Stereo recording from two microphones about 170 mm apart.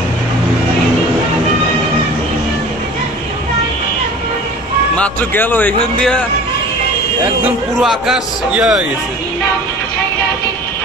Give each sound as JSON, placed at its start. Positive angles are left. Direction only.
{"t": 4.9, "sound": "a man's voice", "side_deg": 10}
{"t": 7.8, "sound": "a man's voice", "side_deg": 0}